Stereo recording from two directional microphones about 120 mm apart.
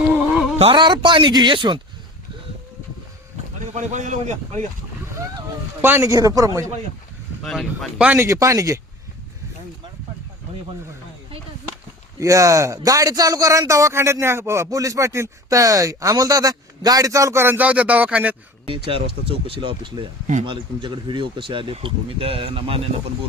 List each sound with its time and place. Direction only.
0.8 s speech: 40° right (ahead or behind)
3.8 s speech: 90° right
5.8 s speech: 20° right (ahead or behind)
7.4 s speech: 5° left (ahead or behind)
7.9 s speech: 10° right (ahead or behind)
8.2 s speech: 25° right (ahead or behind)
12.2 s speech: 25° right (ahead or behind)
18.6 s speech: 50° right (ahead or behind)